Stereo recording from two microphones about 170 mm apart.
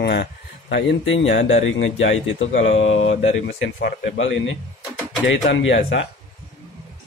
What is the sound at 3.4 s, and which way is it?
Speech, 80° left.